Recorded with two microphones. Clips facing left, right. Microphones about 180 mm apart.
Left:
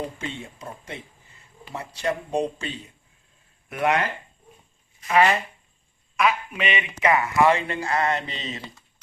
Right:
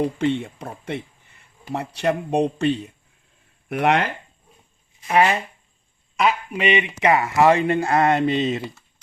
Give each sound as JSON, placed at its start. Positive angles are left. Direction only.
{"t": 0.2, "sound": "speech", "side_deg": -65}
{"t": 5.0, "sound": "speech", "side_deg": -25}
{"t": 7.7, "sound": "speech", "side_deg": -55}